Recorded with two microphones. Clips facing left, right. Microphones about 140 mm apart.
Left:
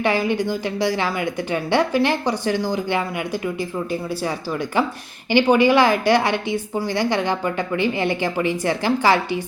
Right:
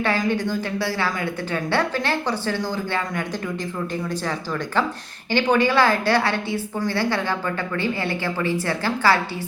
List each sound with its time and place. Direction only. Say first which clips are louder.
0.0 s a woman's voice: left 2 dB; 15° left (ahead or behind)